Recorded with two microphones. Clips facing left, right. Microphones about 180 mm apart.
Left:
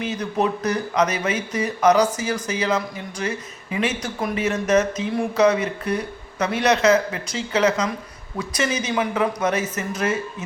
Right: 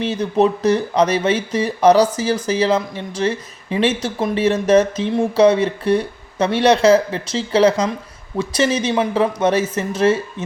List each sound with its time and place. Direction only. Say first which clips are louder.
0.0 s speech: right 6 dB; 30° right (ahead or behind)